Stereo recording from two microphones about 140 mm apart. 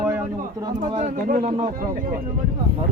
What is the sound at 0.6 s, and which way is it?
Speech, 40° right (ahead or behind).